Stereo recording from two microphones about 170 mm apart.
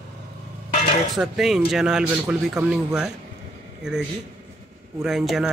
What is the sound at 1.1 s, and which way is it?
Speech, centre (ahead or behind).